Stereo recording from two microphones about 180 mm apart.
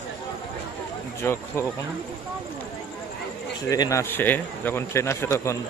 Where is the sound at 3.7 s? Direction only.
20° left (ahead or behind).